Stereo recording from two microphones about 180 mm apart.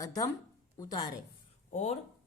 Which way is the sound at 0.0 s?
20° left (ahead or behind).